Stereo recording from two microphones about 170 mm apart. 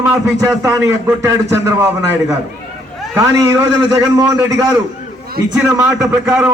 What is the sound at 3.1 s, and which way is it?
A man's voice, 20° right (ahead or behind).